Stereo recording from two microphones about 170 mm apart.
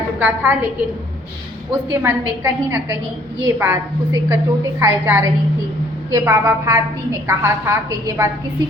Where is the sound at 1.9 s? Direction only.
10° right (ahead or behind).